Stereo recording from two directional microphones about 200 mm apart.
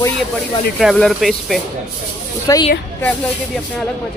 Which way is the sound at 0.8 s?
Centre (ahead or behind).